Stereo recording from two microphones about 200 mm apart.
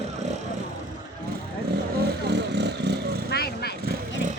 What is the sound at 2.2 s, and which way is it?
Vehicle, 55° right (ahead or behind).